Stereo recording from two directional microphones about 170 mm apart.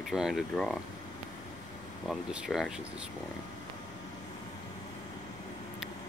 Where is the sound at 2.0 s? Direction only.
Centre (ahead or behind).